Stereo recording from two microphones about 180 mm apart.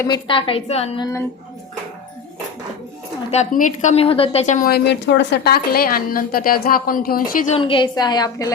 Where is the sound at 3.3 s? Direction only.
40° left (ahead or behind).